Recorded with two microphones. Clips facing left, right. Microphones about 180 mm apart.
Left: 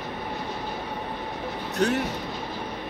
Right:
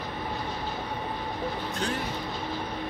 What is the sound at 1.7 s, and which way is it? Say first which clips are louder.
Speech: left 11 dB; 70° left (ahead or behind).